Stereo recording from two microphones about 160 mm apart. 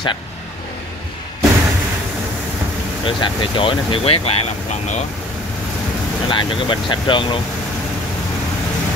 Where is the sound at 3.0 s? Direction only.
30° left (ahead or behind); by 5.1 s 45° left (ahead or behind).